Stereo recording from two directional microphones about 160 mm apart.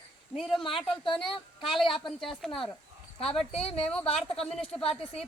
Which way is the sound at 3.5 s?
40° left (ahead or behind).